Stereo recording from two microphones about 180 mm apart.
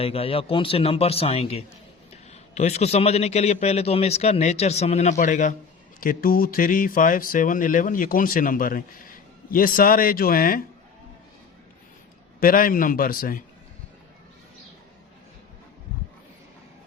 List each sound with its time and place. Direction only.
0.0 s a man's voice: 30° left (ahead or behind); by 10.6 s 50° left (ahead or behind)
12.4 s speech: 50° left (ahead or behind)